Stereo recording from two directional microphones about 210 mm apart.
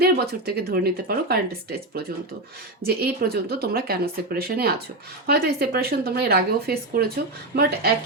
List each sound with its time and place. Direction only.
0.0 s speech: 45° right (ahead or behind)